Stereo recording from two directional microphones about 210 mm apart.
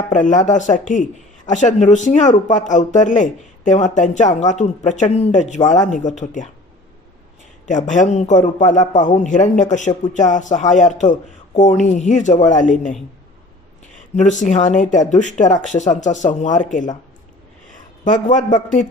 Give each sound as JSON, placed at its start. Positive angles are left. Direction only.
{"t": 0.1, "sound": "a man's voice", "side_deg": 35}
{"t": 7.7, "sound": "a man's voice", "side_deg": 35}
{"t": 14.2, "sound": "a man's voice", "side_deg": 35}
{"t": 18.0, "sound": "a man's voice", "side_deg": 35}